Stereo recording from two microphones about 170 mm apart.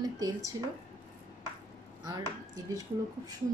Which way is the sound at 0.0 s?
20° right (ahead or behind).